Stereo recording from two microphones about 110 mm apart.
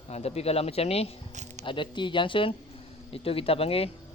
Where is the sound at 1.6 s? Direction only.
50° left (ahead or behind).